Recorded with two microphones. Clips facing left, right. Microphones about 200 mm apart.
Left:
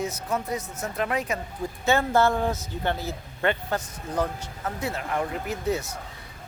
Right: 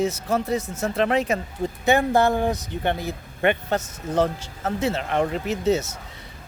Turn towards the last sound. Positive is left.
turn(degrees=-25)  # may be behind; listen again after turning